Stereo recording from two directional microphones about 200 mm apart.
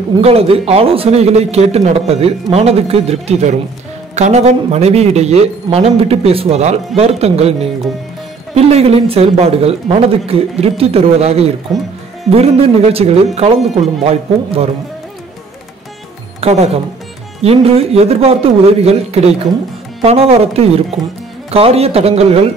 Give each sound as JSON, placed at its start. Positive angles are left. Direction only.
{"t": 0.2, "sound": "a man's voice", "side_deg": -30}
{"t": 16.3, "sound": "a man's voice", "side_deg": -30}